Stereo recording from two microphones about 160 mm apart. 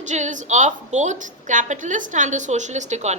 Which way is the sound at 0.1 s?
45° right (ahead or behind).